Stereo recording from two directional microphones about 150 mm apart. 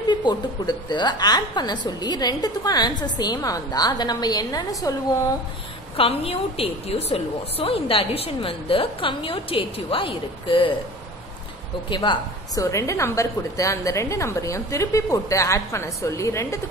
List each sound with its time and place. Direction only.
0.1 s a woman's voice: 30° left (ahead or behind)
5.9 s a woman's voice: 40° left (ahead or behind)
11.9 s a woman's voice: 30° left (ahead or behind)
12.7 s a woman's voice: 20° left (ahead or behind)